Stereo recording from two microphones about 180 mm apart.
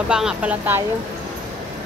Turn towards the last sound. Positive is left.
turn(degrees=-10)  # may be behind; listen again after turning